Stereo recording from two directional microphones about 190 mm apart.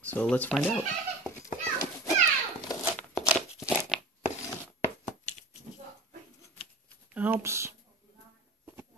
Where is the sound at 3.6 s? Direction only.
5° right (ahead or behind).